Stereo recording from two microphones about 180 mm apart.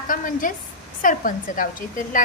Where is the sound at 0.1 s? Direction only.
50° left (ahead or behind).